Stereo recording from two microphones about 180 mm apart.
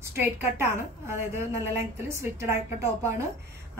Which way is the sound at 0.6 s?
15° right (ahead or behind).